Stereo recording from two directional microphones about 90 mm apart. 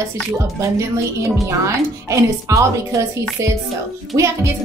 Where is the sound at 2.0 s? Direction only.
35° right (ahead or behind).